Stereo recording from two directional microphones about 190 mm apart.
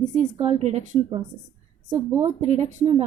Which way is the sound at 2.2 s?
35° right (ahead or behind).